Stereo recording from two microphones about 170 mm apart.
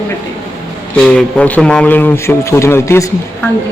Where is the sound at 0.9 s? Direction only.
5° left (ahead or behind).